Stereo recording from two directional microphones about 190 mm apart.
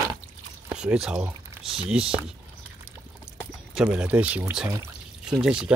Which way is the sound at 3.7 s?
5° right (ahead or behind).